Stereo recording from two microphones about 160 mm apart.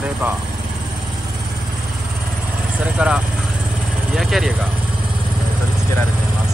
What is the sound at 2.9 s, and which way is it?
Speech, 5° right (ahead or behind).